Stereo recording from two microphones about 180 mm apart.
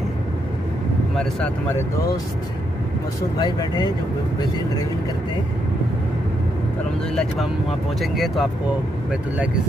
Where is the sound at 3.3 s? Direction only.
20° left (ahead or behind).